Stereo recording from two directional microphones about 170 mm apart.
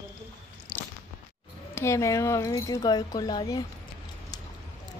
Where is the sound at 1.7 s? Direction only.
15° left (ahead or behind).